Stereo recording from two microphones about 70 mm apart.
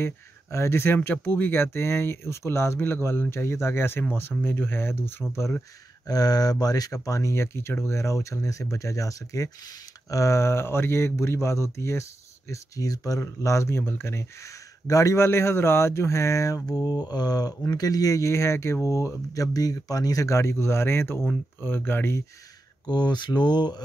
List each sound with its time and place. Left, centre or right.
0.0 s speech: left
6.0 s speech: left
14.9 s speech: left
22.8 s speech: left